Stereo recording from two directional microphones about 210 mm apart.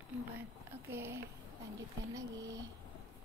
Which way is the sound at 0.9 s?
10° right (ahead or behind).